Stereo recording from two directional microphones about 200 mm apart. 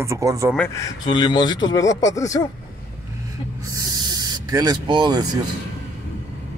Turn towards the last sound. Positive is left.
turn(degrees=-20)  # may be behind; listen again after turning